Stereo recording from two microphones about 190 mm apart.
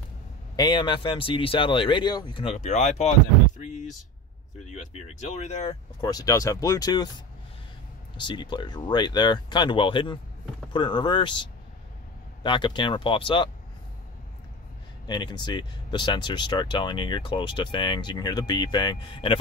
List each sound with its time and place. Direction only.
0.6 s speech: 25° left (ahead or behind)
5.9 s speech: 20° left (ahead or behind)
8.2 s speech: 25° left (ahead or behind)
12.4 s speech: 25° left (ahead or behind)
15.0 s speech: 25° left (ahead or behind)